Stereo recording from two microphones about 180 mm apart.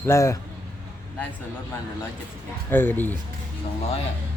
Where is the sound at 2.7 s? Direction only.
10° left (ahead or behind).